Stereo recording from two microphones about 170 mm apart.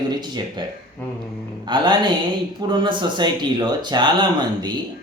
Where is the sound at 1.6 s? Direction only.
25° right (ahead or behind).